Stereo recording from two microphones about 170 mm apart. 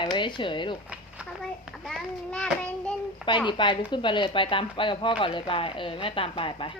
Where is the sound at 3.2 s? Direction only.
25° left (ahead or behind).